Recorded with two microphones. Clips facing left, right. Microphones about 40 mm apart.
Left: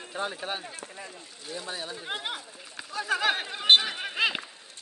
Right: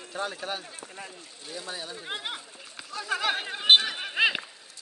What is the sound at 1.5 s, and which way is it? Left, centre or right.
Speech, centre.